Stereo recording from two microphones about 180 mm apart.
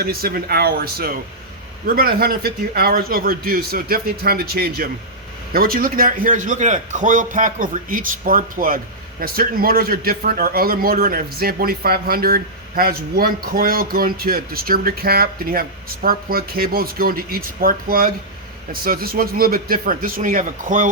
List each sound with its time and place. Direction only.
0.0 s a man's voice: 55° right (ahead or behind)